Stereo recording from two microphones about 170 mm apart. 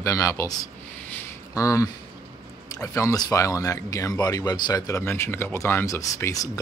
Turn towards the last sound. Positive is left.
turn(degrees=20)  # may be behind; listen again after turning